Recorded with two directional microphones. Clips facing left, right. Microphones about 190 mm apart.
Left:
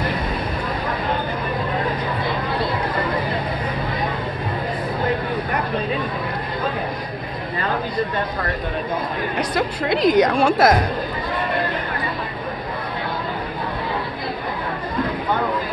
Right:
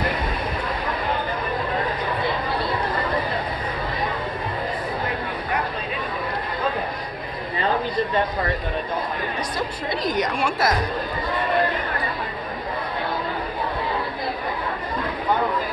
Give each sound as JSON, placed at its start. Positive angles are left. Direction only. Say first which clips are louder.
{"t": 10.0, "sound": "a woman's voice", "louder": "left 9 dB", "side_deg": 55}